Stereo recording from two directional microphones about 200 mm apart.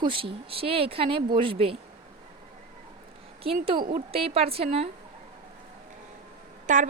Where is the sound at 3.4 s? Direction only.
25° right (ahead or behind).